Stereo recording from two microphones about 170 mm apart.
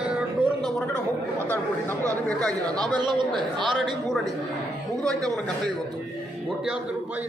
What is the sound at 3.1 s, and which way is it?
Speech, 30° right (ahead or behind).